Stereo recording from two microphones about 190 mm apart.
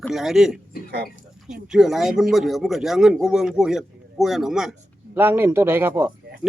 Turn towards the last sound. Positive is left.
turn(degrees=-10)  # may be behind; listen again after turning